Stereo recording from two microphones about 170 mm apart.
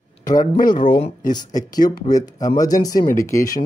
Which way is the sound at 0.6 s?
55° left (ahead or behind).